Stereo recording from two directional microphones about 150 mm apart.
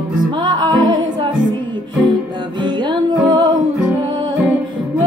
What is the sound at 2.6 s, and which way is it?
Music, 30° right (ahead or behind).